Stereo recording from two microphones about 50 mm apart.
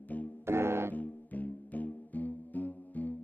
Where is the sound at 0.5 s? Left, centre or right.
Right.